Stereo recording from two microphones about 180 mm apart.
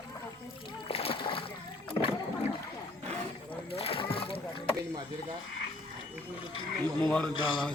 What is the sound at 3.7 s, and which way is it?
Rowboat, 30° left (ahead or behind).